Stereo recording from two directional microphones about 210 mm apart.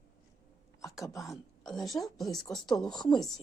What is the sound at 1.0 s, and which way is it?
Speech, 15° left (ahead or behind).